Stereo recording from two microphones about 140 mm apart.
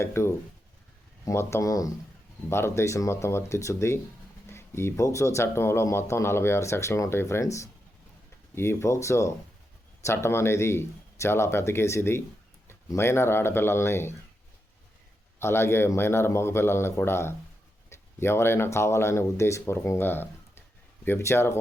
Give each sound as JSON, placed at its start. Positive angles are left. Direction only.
{"t": 0.0, "sound": "speech", "side_deg": 20}
{"t": 15.4, "sound": "speech", "side_deg": 20}